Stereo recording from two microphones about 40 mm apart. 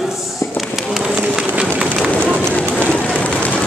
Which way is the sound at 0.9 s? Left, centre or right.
Centre.